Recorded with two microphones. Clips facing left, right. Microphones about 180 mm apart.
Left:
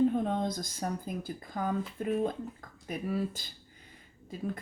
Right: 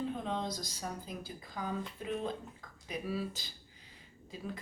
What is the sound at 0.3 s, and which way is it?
Speech, 50° left (ahead or behind).